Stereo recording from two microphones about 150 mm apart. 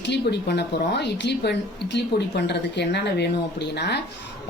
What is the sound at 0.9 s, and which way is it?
A woman's voice, 90° left.